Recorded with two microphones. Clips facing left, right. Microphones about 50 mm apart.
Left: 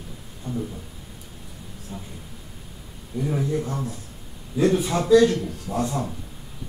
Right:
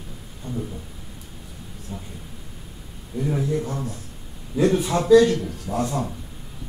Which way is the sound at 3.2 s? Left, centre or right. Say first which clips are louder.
Right 1 dB; centre.